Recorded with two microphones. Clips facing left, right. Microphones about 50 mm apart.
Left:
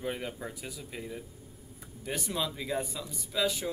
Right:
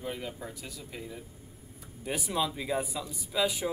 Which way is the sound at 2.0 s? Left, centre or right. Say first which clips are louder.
Right 3 dB; centre.